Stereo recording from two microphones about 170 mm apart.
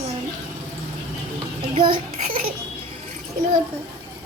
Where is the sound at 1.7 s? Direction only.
30° right (ahead or behind).